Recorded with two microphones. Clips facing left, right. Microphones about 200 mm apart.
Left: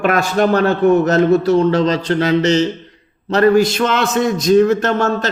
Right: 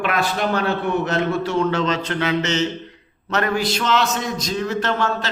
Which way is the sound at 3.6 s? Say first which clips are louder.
Left 4 dB; 50° left (ahead or behind).